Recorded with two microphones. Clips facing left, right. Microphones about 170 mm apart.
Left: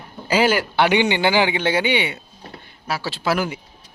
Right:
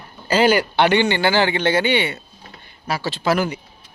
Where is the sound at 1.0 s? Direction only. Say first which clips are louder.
Even; 15° left (ahead or behind).